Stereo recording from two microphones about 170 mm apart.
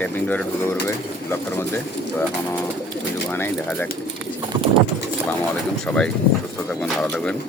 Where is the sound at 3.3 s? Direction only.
10° left (ahead or behind).